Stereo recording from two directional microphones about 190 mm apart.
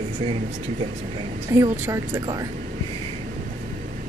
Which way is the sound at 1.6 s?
20° right (ahead or behind).